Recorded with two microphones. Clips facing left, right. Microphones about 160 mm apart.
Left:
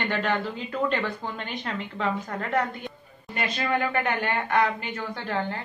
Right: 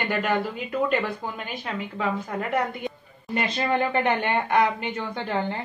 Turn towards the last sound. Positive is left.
turn(degrees=-20)  # may be behind; listen again after turning